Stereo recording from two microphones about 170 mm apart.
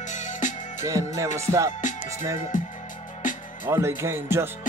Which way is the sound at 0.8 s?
20° right (ahead or behind).